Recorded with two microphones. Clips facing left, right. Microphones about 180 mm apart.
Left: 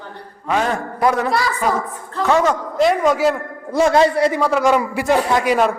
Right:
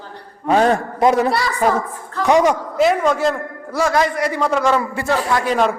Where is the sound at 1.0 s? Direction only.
20° right (ahead or behind).